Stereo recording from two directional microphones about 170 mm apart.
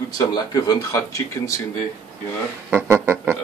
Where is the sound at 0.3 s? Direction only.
25° left (ahead or behind).